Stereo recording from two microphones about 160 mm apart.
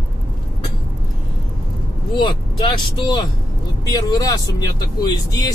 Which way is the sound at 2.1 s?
30° left (ahead or behind).